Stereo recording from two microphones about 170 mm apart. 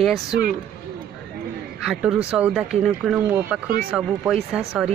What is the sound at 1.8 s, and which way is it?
Speech, 5° right (ahead or behind).